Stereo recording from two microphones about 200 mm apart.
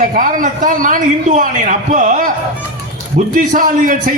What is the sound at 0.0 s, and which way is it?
A man's voice, 40° right (ahead or behind).